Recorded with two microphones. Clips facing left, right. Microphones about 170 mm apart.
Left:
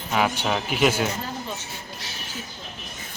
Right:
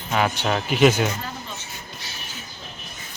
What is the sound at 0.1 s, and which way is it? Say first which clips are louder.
Speech: right 1 dB; 5° left (ahead or behind).